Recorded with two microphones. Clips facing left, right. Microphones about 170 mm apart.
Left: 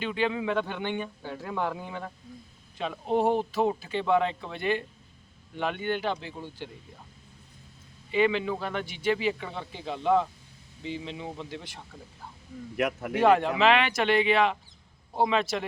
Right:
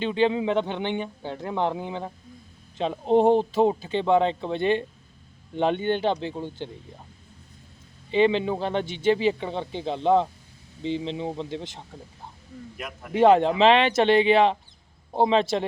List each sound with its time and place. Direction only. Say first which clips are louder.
0.0 s a man's voice: right 6 dB; 25° right (ahead or behind)
8.1 s a man's voice: right 4 dB; 30° right (ahead or behind)
12.7 s speech: left 12 dB; 70° left (ahead or behind)
13.1 s a man's voice: right 5 dB; 25° right (ahead or behind)